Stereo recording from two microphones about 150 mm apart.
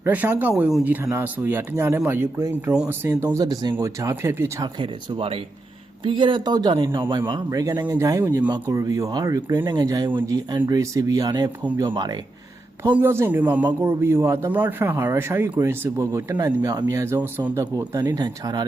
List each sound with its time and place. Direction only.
0.0 s speech: 10° right (ahead or behind)
4.8 s speech: 35° right (ahead or behind)
13.0 s speech: 15° right (ahead or behind)